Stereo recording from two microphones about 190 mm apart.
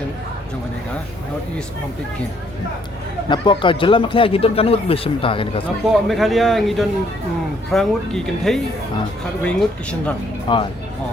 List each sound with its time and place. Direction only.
3.2 s speech: 25° left (ahead or behind)
5.8 s a man's voice: centre (ahead or behind)
10.5 s speech: 25° left (ahead or behind)